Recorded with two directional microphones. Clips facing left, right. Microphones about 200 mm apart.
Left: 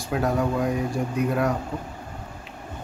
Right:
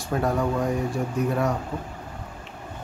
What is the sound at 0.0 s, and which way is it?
Speech, centre (ahead or behind).